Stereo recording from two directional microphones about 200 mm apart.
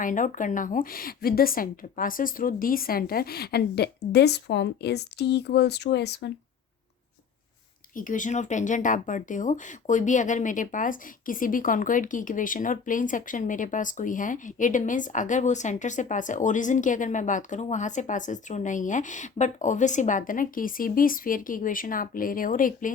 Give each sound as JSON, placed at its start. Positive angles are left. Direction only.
{"t": 0.0, "sound": "a woman's voice", "side_deg": 40}
{"t": 7.9, "sound": "speech", "side_deg": 40}